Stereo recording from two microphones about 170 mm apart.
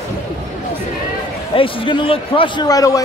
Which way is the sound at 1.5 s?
30° left (ahead or behind).